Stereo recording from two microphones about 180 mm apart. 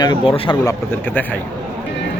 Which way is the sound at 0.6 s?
15° left (ahead or behind).